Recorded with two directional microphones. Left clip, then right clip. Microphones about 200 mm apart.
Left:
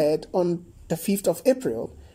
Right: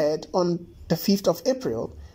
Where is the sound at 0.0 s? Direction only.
5° left (ahead or behind).